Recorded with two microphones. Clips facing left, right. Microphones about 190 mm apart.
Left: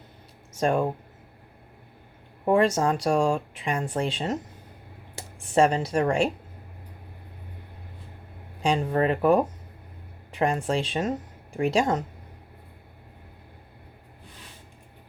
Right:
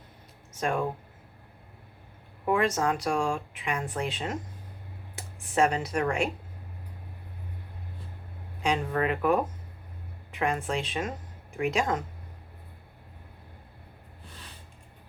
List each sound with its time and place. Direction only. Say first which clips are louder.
0.6 s speech: left 5 dB; 35° left (ahead or behind)
2.4 s speech: left 5 dB; 35° left (ahead or behind)
8.6 s speech: left 4 dB; 35° left (ahead or behind)